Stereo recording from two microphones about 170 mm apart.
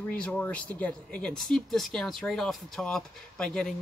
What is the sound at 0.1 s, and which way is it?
Speech, 10° left (ahead or behind).